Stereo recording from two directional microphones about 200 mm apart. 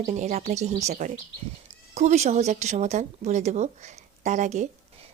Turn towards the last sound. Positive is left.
turn(degrees=-35)  # may be behind; listen again after turning